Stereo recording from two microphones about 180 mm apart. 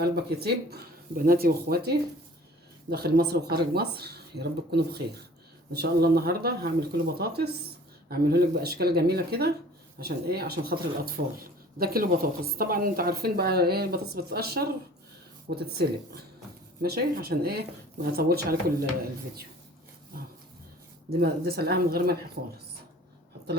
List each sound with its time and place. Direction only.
0.0 s speech: 60° right (ahead or behind)
21.2 s speech: 60° right (ahead or behind)